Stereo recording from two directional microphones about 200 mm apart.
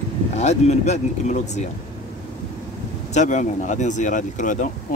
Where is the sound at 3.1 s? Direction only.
35° left (ahead or behind).